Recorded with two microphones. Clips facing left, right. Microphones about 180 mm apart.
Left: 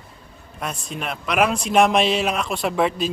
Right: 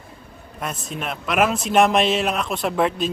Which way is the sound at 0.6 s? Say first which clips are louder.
Even; centre (ahead or behind).